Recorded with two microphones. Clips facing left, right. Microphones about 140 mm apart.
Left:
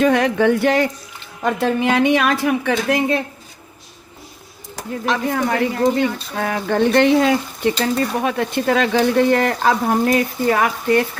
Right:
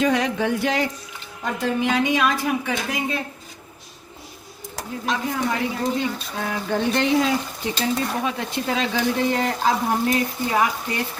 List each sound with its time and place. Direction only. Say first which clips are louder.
0.0 s speech: left 6 dB; 60° left (ahead or behind)
5.0 s speech: left 5 dB; 70° left (ahead or behind)